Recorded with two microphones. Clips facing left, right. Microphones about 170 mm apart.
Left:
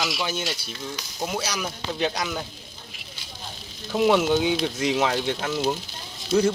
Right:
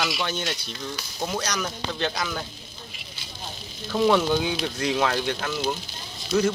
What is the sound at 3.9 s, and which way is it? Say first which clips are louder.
Speech: left 1 dB; 15° left (ahead or behind).